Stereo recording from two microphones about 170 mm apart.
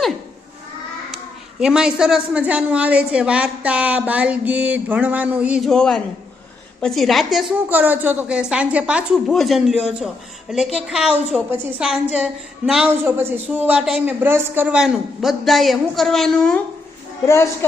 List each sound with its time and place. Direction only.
1.1 s a man's voice: 5° right (ahead or behind)
17.2 s speech: 15° left (ahead or behind)